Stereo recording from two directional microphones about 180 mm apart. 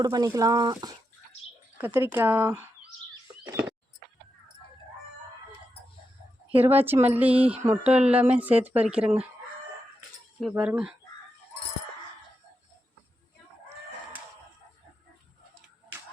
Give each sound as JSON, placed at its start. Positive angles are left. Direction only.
{"t": 0.0, "sound": "speech", "side_deg": -20}
{"t": 1.8, "sound": "speech", "side_deg": -10}
{"t": 6.7, "sound": "speech", "side_deg": -10}
{"t": 10.5, "sound": "speech", "side_deg": -10}